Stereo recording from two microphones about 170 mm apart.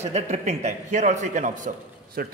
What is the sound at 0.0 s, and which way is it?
A man's voice, 40° right (ahead or behind).